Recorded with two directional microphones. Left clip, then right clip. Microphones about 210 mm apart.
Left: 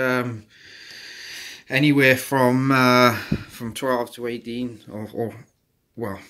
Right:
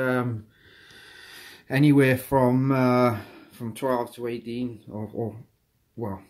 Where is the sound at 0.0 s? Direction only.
5° right (ahead or behind).